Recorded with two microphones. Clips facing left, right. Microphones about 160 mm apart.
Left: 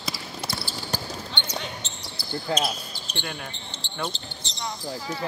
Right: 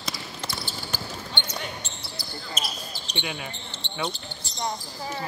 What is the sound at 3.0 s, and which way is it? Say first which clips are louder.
Speech: right 3 dB; centre (ahead or behind).